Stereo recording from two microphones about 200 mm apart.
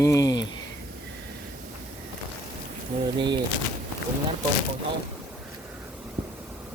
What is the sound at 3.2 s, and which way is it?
Speech, 20° right (ahead or behind).